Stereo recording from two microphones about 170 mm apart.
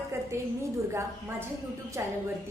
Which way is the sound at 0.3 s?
15° right (ahead or behind).